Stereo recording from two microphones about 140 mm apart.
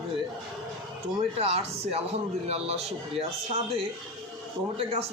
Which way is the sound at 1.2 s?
45° right (ahead or behind).